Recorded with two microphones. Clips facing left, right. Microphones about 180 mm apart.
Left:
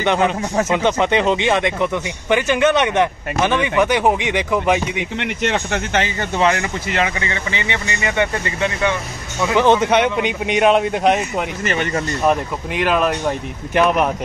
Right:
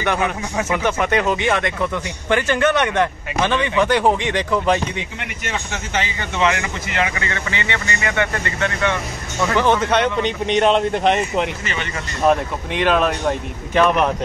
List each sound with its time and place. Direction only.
0.0 s speech: 20° left (ahead or behind)
5.2 s speech: 65° left (ahead or behind)
6.3 s speech: 35° left (ahead or behind); by 11.4 s 5° left (ahead or behind)
11.6 s speech: 50° left (ahead or behind)
12.3 s speech: 5° left (ahead or behind)